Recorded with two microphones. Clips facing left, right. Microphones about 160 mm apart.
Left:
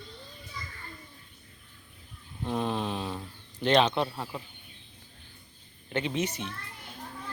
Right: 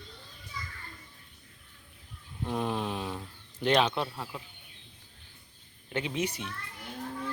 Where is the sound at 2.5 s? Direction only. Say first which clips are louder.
Left 1 dB; 10° right (ahead or behind).